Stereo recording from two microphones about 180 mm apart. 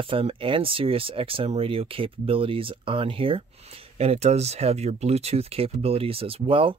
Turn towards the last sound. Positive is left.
turn(degrees=-30)  # may be behind; listen again after turning